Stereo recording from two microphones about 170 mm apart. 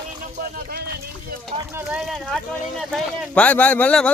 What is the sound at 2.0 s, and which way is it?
A man's voice, centre (ahead or behind).